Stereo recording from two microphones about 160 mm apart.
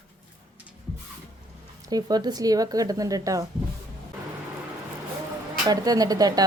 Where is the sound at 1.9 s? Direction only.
25° right (ahead or behind).